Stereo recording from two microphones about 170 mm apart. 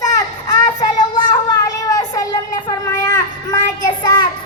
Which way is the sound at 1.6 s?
20° left (ahead or behind).